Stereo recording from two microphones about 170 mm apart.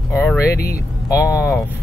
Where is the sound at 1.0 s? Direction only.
20° left (ahead or behind).